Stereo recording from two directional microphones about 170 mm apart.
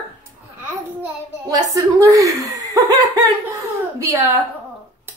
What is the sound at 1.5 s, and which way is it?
A woman's voice, 20° right (ahead or behind).